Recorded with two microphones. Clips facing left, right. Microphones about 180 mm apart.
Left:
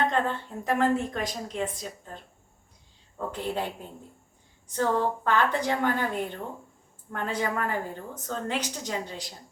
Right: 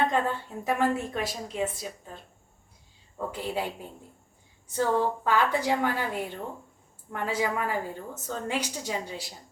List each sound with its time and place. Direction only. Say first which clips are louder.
0.1 s a woman's voice: even; 10° right (ahead or behind)
3.2 s a woman's voice: left 1 dB; 10° right (ahead or behind)
4.7 s a woman's voice: even; 10° right (ahead or behind)